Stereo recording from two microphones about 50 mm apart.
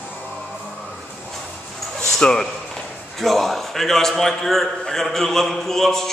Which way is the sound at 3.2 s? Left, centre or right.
Centre.